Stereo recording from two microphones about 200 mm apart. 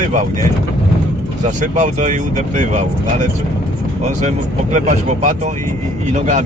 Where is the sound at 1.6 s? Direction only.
40° right (ahead or behind).